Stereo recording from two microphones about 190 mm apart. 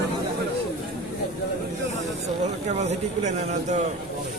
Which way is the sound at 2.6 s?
35° right (ahead or behind).